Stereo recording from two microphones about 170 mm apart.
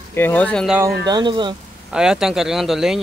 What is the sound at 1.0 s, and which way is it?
Speech, 25° right (ahead or behind).